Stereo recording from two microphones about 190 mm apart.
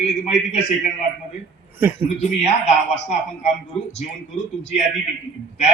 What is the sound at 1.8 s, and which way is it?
Speech, 10° right (ahead or behind).